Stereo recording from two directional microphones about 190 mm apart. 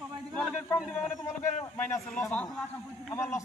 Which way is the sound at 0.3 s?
5° left (ahead or behind).